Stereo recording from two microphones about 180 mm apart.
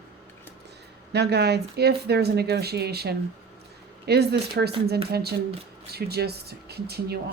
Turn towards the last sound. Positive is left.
turn(degrees=-60)  # may be behind; listen again after turning